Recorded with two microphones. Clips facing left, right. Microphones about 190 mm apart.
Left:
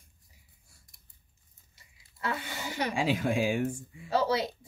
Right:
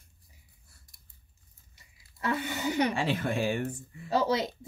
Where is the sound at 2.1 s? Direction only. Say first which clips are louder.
Right 4 dB; 20° right (ahead or behind).